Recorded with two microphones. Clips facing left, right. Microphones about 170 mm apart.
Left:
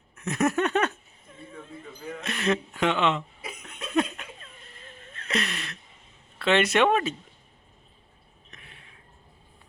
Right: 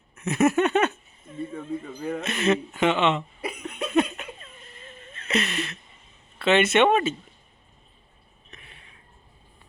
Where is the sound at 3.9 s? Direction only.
5° right (ahead or behind).